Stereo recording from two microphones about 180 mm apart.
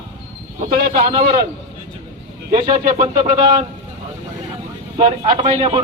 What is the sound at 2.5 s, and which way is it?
Speech, 30° right (ahead or behind).